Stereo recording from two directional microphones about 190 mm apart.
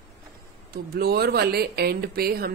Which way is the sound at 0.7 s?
55° right (ahead or behind).